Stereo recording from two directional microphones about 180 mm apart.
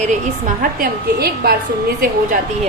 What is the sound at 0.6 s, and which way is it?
Speech, 55° right (ahead or behind).